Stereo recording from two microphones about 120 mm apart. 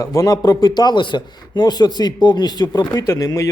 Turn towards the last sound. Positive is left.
turn(degrees=30)  # may be behind; listen again after turning